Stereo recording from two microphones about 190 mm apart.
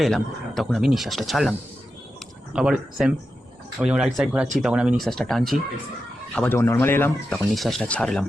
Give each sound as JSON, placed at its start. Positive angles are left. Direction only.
{"t": 0.0, "sound": "speech", "side_deg": 0}
{"t": 7.3, "sound": "speech", "side_deg": 0}